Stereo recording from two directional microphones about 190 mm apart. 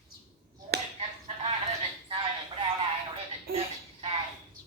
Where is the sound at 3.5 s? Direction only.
55° right (ahead or behind).